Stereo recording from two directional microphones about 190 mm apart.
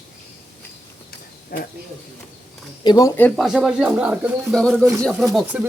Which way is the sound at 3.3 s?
Centre (ahead or behind).